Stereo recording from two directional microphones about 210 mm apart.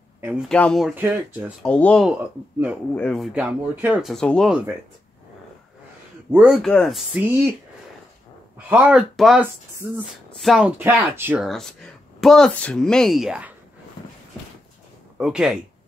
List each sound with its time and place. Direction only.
0.2 s speech: 10° right (ahead or behind)
0.5 s speech: 5° left (ahead or behind)
1.6 s speech: 5° left (ahead or behind)
6.3 s speech: 5° right (ahead or behind)
8.6 s speech: 5° right (ahead or behind)
15.1 s speech: 5° right (ahead or behind)